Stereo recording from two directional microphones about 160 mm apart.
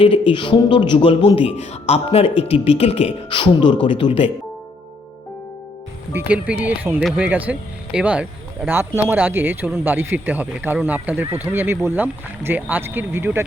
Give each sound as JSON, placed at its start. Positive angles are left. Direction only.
{"t": 0.0, "sound": "speech", "side_deg": 35}
{"t": 6.1, "sound": "speech", "side_deg": -10}